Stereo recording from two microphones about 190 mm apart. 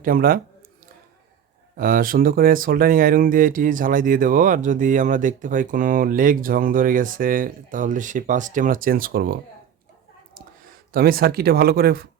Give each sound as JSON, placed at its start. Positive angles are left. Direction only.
{"t": 0.0, "sound": "speech", "side_deg": -50}
{"t": 1.7, "sound": "speech", "side_deg": -50}
{"t": 10.9, "sound": "speech", "side_deg": -55}